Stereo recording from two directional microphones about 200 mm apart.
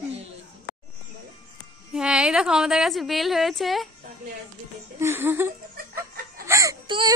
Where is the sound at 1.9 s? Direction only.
5° right (ahead or behind).